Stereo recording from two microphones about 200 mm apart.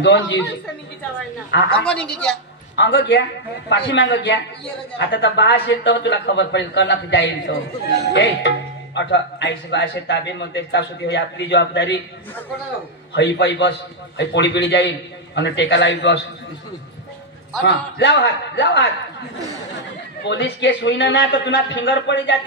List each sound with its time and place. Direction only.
0.0 s speech: 60° left (ahead or behind)
1.5 s speech: 60° left (ahead or behind)
1.9 s a woman's voice: 5° left (ahead or behind)
2.7 s speech: 55° left (ahead or behind)
13.1 s speech: 60° left (ahead or behind)
17.6 s speech: 60° left (ahead or behind)
20.2 s speech: 60° left (ahead or behind)